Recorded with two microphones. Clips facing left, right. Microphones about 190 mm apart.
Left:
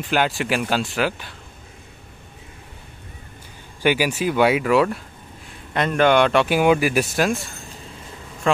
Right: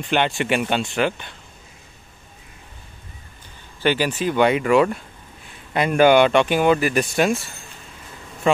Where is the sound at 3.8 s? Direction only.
10° left (ahead or behind).